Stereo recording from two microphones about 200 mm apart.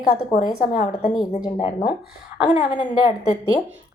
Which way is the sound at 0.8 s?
25° left (ahead or behind).